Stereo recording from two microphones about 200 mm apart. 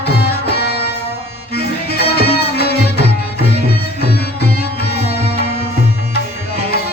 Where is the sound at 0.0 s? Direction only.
55° left (ahead or behind).